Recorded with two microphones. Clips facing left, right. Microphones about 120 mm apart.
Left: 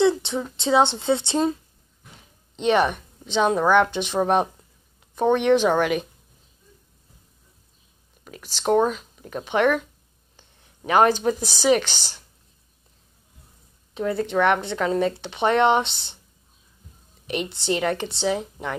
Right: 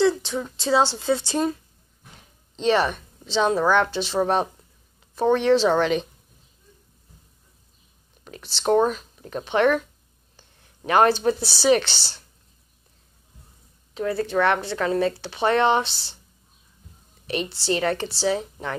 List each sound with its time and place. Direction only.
0.0 s a sound: 25° left (ahead or behind)
0.6 s a woman's voice: 20° left (ahead or behind)
8.3 s a woman's voice: 15° left (ahead or behind)
10.9 s a woman's voice: 15° left (ahead or behind)
13.9 s speech: 20° left (ahead or behind)
17.3 s a woman's voice: 20° left (ahead or behind)